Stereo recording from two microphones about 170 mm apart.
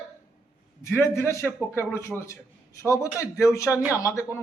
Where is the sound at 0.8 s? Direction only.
15° left (ahead or behind).